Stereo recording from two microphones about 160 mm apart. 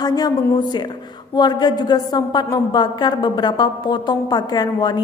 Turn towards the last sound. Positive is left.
turn(degrees=25)  # may be behind; listen again after turning